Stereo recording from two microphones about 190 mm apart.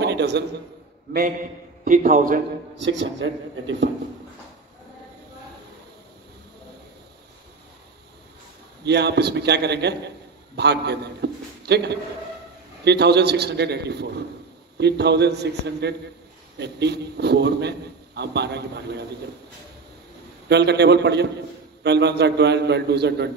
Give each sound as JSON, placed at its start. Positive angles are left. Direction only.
{"t": 0.0, "sound": "a sound", "side_deg": -60}
{"t": 1.9, "sound": "a man's voice", "side_deg": -45}
{"t": 2.8, "sound": "speech", "side_deg": -75}
{"t": 8.8, "sound": "a man's voice", "side_deg": -60}
{"t": 20.4, "sound": "a man's voice", "side_deg": -60}